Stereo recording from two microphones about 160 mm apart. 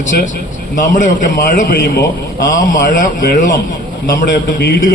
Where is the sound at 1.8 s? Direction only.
90° left.